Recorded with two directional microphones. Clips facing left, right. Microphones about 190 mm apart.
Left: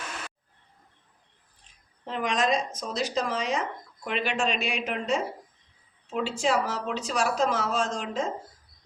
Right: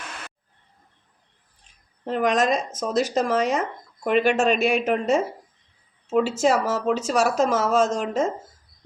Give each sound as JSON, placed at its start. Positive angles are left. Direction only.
{"t": 2.0, "sound": "speech", "side_deg": -45}